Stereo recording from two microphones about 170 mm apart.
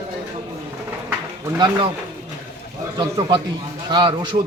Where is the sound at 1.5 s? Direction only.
25° right (ahead or behind).